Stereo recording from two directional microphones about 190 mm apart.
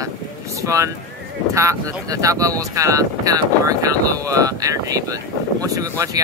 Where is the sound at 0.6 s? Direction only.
15° right (ahead or behind).